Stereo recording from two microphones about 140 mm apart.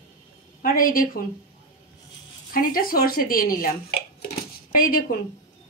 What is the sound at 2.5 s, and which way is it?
A woman's voice, 90° left.